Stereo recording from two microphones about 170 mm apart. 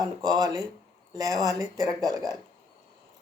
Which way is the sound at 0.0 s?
20° right (ahead or behind).